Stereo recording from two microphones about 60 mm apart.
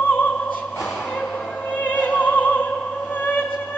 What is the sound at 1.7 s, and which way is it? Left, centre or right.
Opera, left.